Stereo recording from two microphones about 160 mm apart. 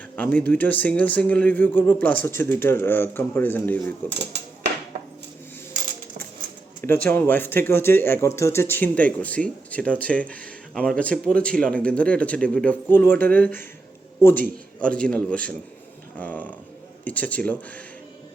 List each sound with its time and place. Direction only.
0.2 s speech: 10° left (ahead or behind)
4.2 s a sound: 90° right
6.8 s speech: 10° left (ahead or behind)